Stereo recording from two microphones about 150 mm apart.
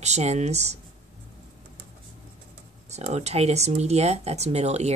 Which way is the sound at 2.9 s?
45° right (ahead or behind).